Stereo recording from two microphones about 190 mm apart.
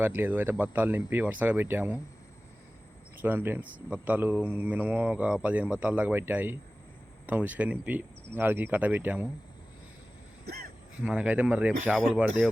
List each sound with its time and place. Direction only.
0.0 s speech: 10° right (ahead or behind)
3.2 s speech: 10° right (ahead or behind)
10.4 s a sound: 55° right (ahead or behind)
10.9 s speech: 5° right (ahead or behind)